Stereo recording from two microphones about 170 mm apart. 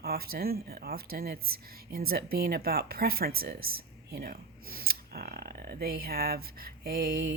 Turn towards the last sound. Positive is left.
turn(degrees=-60)  # may be behind; listen again after turning